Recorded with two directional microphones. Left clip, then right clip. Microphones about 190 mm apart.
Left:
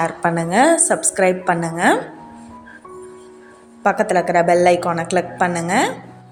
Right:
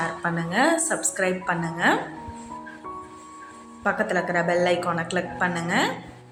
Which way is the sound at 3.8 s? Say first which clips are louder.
Left 8 dB; 35° left (ahead or behind).